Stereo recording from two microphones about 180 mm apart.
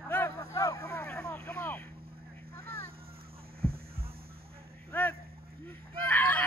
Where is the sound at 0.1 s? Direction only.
15° left (ahead or behind).